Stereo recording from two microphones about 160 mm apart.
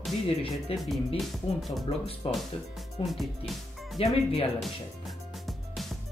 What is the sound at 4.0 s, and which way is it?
Speech, 40° left (ahead or behind).